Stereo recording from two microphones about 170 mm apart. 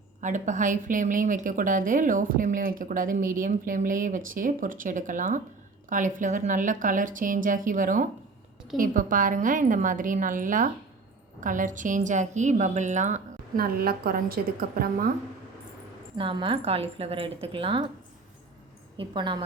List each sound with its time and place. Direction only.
0.2 s a woman's voice: 45° right (ahead or behind)
13.6 s a woman's voice: 60° right (ahead or behind)
16.1 s a woman's voice: 30° right (ahead or behind)
18.9 s a woman's voice: 25° right (ahead or behind)